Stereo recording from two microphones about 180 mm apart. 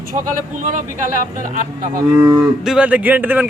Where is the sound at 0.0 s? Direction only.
50° right (ahead or behind).